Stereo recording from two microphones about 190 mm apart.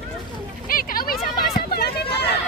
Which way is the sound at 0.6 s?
50° left (ahead or behind).